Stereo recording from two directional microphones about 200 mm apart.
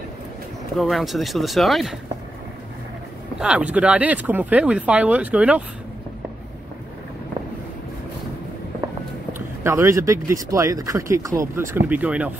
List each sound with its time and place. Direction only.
0.7 s speech: centre (ahead or behind)
3.3 s speech: 5° right (ahead or behind)
9.6 s speech: 15° right (ahead or behind)